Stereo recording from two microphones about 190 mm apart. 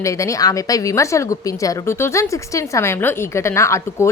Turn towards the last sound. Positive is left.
turn(degrees=15)  # may be behind; listen again after turning